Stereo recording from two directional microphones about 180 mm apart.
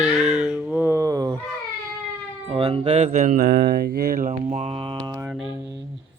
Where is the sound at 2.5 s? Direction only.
30° right (ahead or behind).